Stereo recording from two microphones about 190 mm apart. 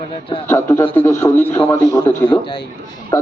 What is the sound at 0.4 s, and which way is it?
A man's voice, 15° left (ahead or behind).